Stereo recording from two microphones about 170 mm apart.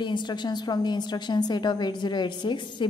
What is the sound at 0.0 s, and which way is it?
A woman's voice, 25° left (ahead or behind).